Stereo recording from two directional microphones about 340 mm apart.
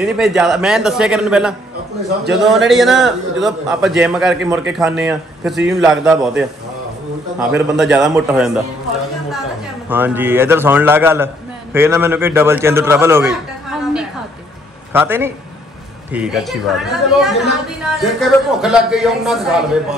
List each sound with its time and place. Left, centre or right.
0.0 s a man's voice: centre
9.8 s a man's voice: centre